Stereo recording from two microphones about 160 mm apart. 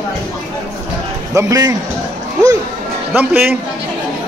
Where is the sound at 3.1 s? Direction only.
10° right (ahead or behind).